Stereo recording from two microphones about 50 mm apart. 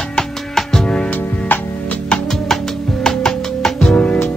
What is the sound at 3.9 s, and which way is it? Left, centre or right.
Music, left.